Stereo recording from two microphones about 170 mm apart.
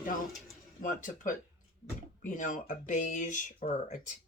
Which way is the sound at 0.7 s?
50° left (ahead or behind).